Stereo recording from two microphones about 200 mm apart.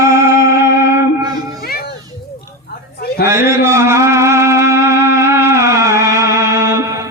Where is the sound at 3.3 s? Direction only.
10° right (ahead or behind).